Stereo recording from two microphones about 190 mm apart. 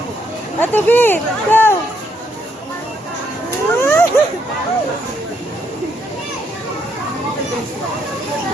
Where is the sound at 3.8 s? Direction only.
10° left (ahead or behind).